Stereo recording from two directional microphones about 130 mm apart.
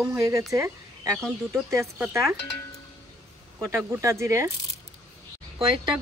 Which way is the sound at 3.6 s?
20° right (ahead or behind).